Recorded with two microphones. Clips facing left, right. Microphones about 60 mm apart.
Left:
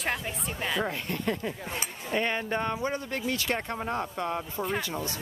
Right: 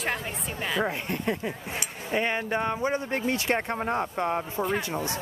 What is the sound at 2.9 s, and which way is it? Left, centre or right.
Speech, right.